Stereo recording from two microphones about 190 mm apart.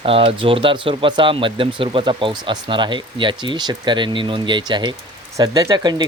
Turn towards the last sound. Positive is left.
turn(degrees=-20)  # may be behind; listen again after turning